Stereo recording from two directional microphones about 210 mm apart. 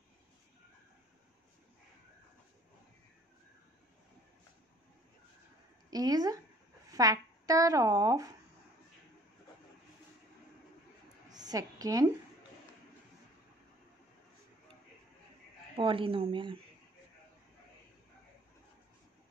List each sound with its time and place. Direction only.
5.9 s speech: 20° right (ahead or behind)
11.2 s a sound: 20° right (ahead or behind)
15.7 s speech: 25° right (ahead or behind)